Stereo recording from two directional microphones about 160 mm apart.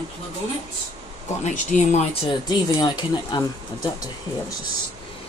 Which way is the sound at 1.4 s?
50° left (ahead or behind).